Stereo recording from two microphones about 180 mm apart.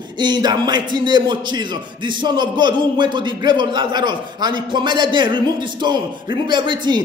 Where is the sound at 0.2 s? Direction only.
25° right (ahead or behind).